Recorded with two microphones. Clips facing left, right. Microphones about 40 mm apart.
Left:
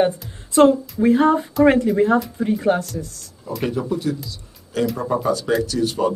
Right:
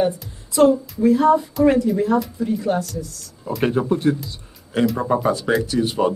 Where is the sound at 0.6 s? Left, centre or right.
Left.